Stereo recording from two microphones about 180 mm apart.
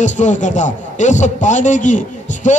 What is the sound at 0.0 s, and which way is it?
A man's voice, 45° left (ahead or behind).